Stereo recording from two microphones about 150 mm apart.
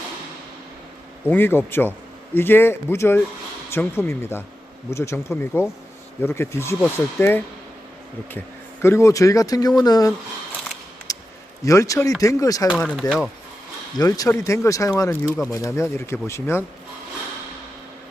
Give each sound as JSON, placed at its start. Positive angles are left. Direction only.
{"t": 1.2, "sound": "speech", "side_deg": 15}
{"t": 8.8, "sound": "speech", "side_deg": 20}
{"t": 11.1, "sound": "a sound", "side_deg": 25}
{"t": 11.6, "sound": "speech", "side_deg": 20}
{"t": 13.0, "sound": "speech", "side_deg": 0}
{"t": 14.0, "sound": "speech", "side_deg": 20}